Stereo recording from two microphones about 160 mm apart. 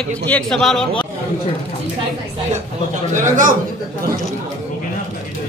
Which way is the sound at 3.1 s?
55° right (ahead or behind).